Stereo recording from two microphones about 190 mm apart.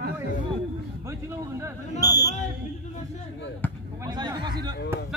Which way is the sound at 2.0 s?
20° left (ahead or behind).